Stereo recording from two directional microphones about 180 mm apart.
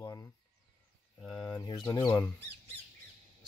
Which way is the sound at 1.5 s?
20° left (ahead or behind).